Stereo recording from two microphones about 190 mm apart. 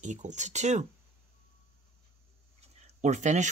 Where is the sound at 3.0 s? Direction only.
40° right (ahead or behind).